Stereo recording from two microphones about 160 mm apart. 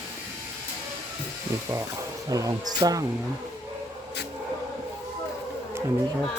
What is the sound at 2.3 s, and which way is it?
Speech, 25° right (ahead or behind).